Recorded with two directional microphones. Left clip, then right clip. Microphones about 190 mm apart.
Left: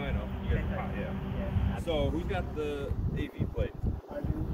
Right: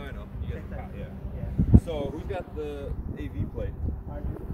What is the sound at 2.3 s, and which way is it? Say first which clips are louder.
Speech: even; 30° left (ahead or behind).